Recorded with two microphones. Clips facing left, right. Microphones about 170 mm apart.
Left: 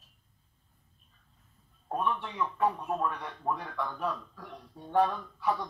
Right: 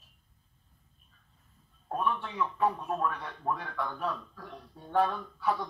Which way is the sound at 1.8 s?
10° left (ahead or behind).